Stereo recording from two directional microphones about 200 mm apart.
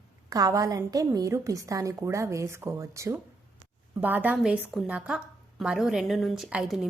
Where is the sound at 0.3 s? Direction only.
15° right (ahead or behind).